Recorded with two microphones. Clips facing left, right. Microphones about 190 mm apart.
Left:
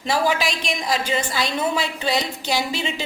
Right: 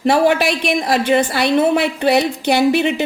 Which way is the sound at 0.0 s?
60° right (ahead or behind).